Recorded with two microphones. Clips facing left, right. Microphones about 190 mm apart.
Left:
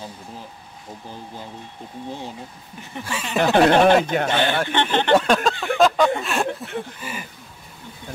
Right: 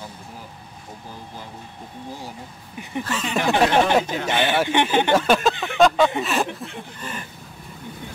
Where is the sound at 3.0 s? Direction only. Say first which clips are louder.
Right 1 dB; 10° left (ahead or behind).